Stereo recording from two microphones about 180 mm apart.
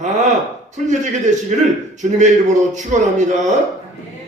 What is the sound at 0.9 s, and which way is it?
Speech, 40° right (ahead or behind).